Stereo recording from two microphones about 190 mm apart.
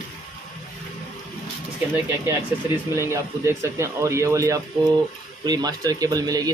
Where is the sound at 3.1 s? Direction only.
15° right (ahead or behind).